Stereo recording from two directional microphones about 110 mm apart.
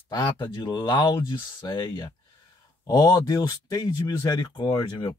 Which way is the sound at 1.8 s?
30° left (ahead or behind).